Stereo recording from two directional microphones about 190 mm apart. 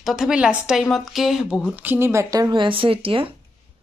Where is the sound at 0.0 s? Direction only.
Centre (ahead or behind); by 3.3 s 30° right (ahead or behind).